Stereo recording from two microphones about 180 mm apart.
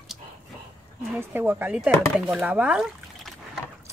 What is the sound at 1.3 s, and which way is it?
Speech, 10° right (ahead or behind).